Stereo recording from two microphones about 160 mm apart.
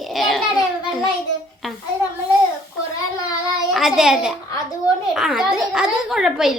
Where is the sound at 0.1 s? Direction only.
Centre (ahead or behind).